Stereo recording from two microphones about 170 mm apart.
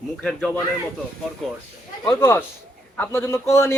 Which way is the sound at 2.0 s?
15° left (ahead or behind).